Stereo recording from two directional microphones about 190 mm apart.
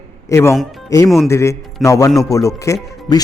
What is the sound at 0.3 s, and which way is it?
Speech, 15° left (ahead or behind).